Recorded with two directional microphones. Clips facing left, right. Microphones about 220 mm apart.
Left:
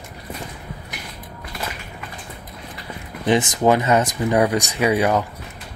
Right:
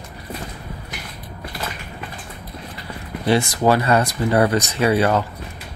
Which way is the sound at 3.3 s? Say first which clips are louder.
Even; 20° left (ahead or behind).